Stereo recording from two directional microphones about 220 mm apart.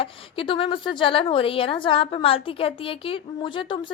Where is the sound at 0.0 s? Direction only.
25° left (ahead or behind).